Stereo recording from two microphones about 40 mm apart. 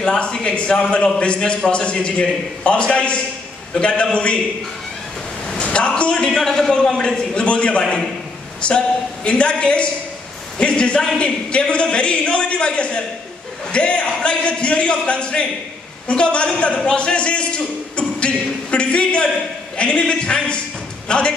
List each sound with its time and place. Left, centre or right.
0.0 s a man's voice: left
5.5 s a sound: left
6.3 s a man's voice: centre